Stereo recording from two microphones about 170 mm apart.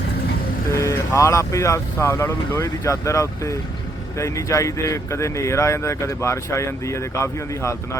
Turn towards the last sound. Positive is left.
turn(degrees=15)  # may be behind; listen again after turning